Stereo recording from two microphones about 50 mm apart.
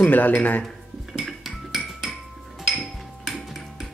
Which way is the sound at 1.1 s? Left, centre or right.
Centre.